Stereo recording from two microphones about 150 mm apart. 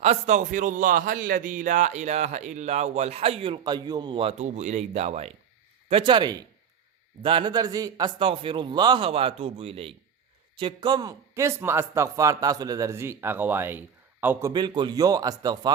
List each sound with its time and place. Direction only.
0.0 s a man's voice: 50° right (ahead or behind)
5.9 s a man's voice: 35° right (ahead or behind); by 14.5 s 15° right (ahead or behind)
14.5 s a man's voice: 30° right (ahead or behind)